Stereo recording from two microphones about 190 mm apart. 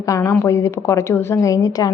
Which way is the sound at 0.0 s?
15° left (ahead or behind).